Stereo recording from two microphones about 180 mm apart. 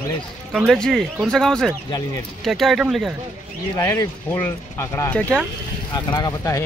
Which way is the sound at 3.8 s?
15° left (ahead or behind).